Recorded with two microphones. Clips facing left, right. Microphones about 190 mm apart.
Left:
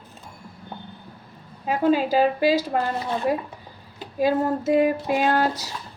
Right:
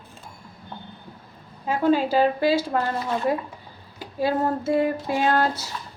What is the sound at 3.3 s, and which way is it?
Child singing, 10° left (ahead or behind).